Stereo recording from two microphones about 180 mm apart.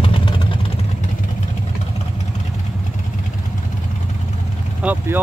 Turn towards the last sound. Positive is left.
turn(degrees=-10)  # may be behind; listen again after turning